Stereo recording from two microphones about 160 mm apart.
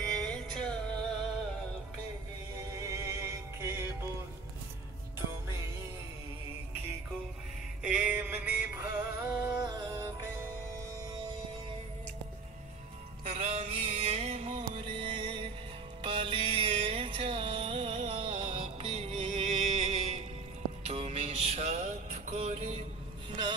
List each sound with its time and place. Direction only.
0.0 s music: 5° left (ahead or behind)
2.7 s synthetic singing: 20° right (ahead or behind)
7.8 s a sound: 5° right (ahead or behind)
9.3 s music: 15° right (ahead or behind)
13.2 s music: 40° right (ahead or behind)